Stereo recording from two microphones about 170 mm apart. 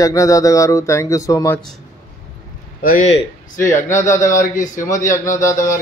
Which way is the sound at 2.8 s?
50° left (ahead or behind).